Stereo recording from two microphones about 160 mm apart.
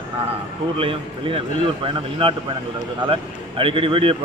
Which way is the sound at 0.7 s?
35° right (ahead or behind).